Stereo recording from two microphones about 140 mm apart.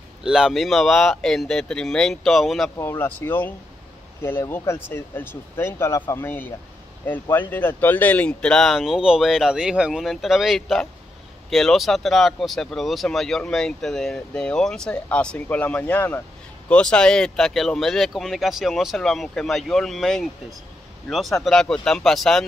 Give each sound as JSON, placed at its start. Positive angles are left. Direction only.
{"t": 0.2, "sound": "speech", "side_deg": -5}
{"t": 2.8, "sound": "speech", "side_deg": 15}